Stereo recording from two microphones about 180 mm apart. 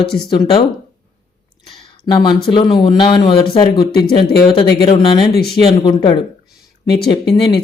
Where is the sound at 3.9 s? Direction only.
65° left (ahead or behind).